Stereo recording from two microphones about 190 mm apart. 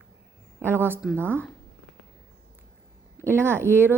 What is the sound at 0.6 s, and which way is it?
Speech, 10° right (ahead or behind).